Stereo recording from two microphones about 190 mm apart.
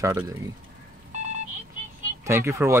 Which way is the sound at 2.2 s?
15° right (ahead or behind).